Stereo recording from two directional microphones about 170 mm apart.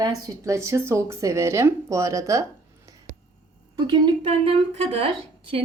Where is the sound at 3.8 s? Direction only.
25° right (ahead or behind).